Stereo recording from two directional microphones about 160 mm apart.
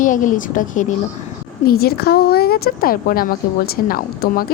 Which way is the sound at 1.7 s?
70° left (ahead or behind).